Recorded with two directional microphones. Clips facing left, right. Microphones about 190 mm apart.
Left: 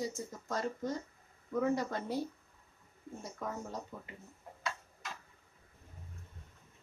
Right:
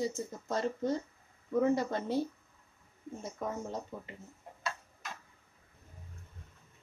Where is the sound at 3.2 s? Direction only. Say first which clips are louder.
Right 4 dB; 25° right (ahead or behind).